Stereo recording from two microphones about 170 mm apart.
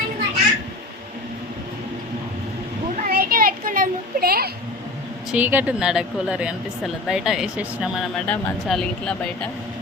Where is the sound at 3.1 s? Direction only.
55° right (ahead or behind).